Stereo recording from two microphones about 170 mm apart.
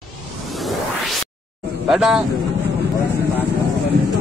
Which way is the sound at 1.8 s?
5° right (ahead or behind).